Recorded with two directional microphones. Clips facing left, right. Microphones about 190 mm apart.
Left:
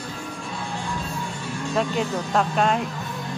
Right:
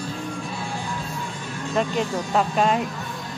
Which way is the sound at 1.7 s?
Centre (ahead or behind).